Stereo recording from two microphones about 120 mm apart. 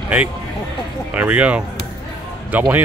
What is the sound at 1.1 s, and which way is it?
Speech, 10° right (ahead or behind).